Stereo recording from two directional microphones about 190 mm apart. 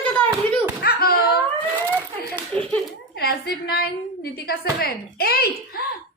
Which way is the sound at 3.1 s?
55° left (ahead or behind).